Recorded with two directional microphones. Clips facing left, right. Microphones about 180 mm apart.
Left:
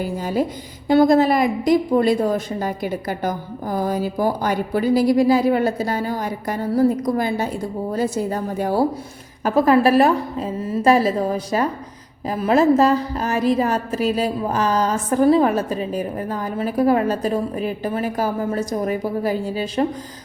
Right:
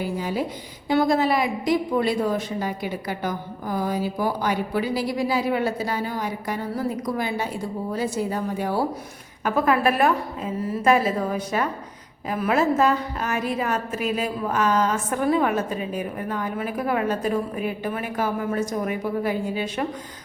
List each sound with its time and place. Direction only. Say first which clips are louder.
0.2 s a woman's voice: left 5 dB; 45° left (ahead or behind)